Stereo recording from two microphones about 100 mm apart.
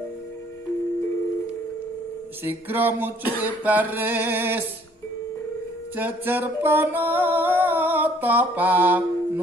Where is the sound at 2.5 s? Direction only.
20° right (ahead or behind).